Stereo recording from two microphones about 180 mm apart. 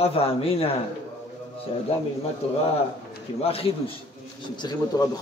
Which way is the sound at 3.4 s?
35° left (ahead or behind).